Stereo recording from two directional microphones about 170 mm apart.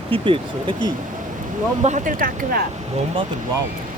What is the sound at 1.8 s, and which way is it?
Speech, 50° right (ahead or behind).